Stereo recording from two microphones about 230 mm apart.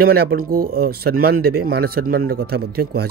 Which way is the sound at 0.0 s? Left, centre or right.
Right.